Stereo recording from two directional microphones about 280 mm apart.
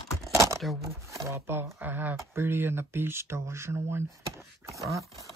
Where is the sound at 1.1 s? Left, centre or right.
Centre.